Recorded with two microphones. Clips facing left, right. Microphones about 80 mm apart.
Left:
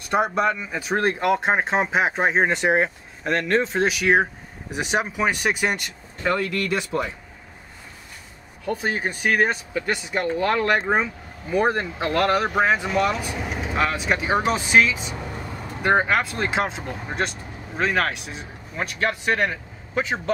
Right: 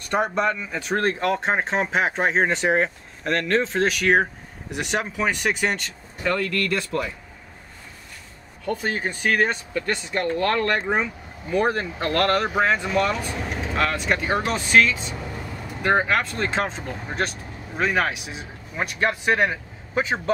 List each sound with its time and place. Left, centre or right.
0.0 s speech: centre
8.6 s speech: centre